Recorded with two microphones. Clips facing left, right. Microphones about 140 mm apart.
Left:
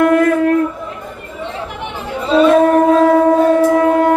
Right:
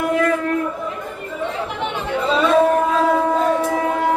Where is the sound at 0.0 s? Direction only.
60° left (ahead or behind).